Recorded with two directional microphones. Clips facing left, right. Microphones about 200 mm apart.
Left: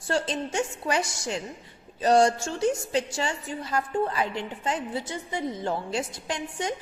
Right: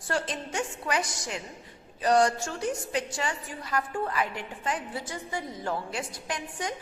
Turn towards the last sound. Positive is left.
turn(degrees=25)  # may be behind; listen again after turning